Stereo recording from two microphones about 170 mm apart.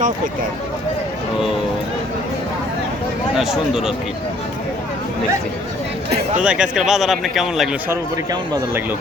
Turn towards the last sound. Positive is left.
turn(degrees=0)  # may be behind; listen again after turning